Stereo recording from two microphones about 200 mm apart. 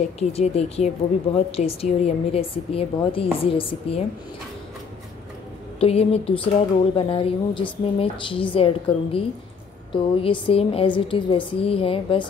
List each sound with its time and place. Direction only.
0.2 s speech: 30° left (ahead or behind)
5.8 s speech: 30° left (ahead or behind)
10.2 s speech: 25° left (ahead or behind)